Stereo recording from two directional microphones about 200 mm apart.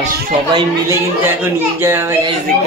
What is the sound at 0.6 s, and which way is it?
Speech, 15° right (ahead or behind).